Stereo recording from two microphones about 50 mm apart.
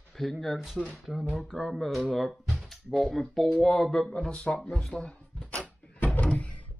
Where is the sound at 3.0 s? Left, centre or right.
Centre.